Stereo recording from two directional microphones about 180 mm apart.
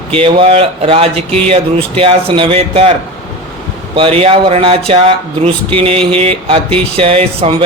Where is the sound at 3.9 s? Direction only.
30° right (ahead or behind).